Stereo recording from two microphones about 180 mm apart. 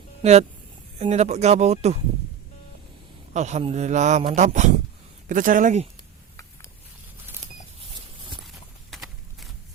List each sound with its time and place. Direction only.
0.2 s a man's voice: 35° right (ahead or behind)
3.3 s a man's voice: 40° right (ahead or behind)
8.9 s a sound: centre (ahead or behind)